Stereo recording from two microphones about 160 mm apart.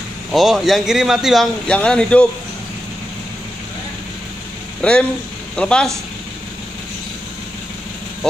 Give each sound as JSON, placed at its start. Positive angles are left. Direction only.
{"t": 0.3, "sound": "a man's voice", "side_deg": 0}
{"t": 4.8, "sound": "a man's voice", "side_deg": 5}